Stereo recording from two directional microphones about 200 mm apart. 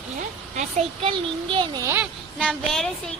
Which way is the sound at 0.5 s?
30° right (ahead or behind).